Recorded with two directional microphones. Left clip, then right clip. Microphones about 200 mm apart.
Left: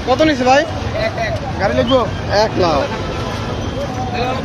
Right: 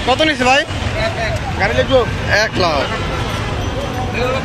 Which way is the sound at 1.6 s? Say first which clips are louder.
Right 1 dB; 45° left (ahead or behind).